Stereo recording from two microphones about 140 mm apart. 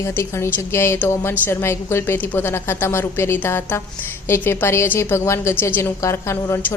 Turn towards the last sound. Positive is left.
turn(degrees=20)  # may be behind; listen again after turning